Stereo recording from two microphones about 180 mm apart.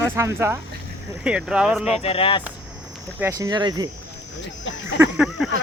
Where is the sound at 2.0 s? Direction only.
30° left (ahead or behind).